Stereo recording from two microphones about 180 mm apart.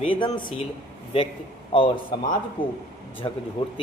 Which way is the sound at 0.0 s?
30° left (ahead or behind).